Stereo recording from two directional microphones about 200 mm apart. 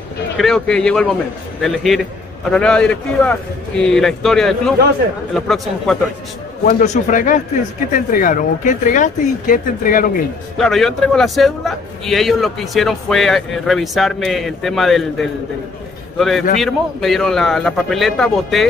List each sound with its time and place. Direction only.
0.4 s a man's voice: 5° left (ahead or behind)
6.6 s speech: 40° left (ahead or behind)
10.6 s a man's voice: centre (ahead or behind)